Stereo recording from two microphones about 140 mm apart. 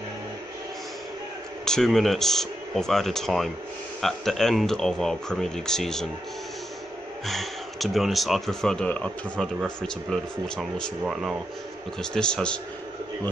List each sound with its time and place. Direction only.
1.7 s speech: 5° left (ahead or behind)
7.2 s speech: centre (ahead or behind)